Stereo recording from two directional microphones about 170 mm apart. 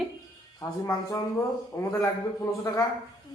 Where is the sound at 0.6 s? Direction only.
20° left (ahead or behind).